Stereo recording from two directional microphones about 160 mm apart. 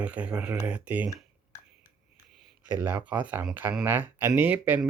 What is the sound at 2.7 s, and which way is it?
Speech, 10° right (ahead or behind).